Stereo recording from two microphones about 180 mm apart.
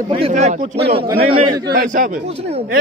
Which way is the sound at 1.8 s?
50° right (ahead or behind).